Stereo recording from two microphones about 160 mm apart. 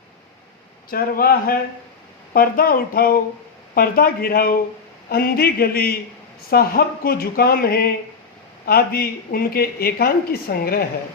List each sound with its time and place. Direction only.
0.9 s speech: 65° left (ahead or behind)